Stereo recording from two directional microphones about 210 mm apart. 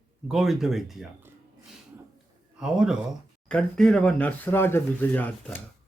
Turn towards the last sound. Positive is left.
turn(degrees=10)  # may be behind; listen again after turning